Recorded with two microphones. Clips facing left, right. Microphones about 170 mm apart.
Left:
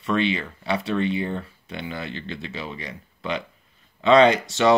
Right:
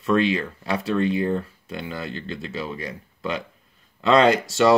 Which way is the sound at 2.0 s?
40° right (ahead or behind).